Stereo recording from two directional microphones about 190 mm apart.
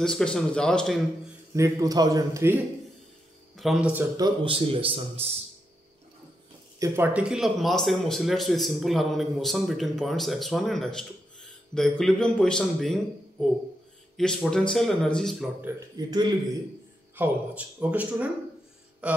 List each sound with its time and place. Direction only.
0.0 s speech: 5° left (ahead or behind)
1.5 s speech: 15° right (ahead or behind)
3.5 s a man's voice: centre (ahead or behind)
4.2 s speech: 30° right (ahead or behind)
6.8 s speech: 10° right (ahead or behind)
16.0 s speech: 20° right (ahead or behind)
17.1 s speech: 10° right (ahead or behind)